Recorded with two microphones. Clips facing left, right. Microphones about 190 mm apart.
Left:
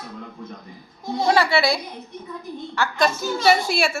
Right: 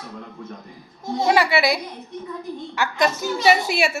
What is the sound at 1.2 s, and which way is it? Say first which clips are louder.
A woman's voice: even; 15° right (ahead or behind).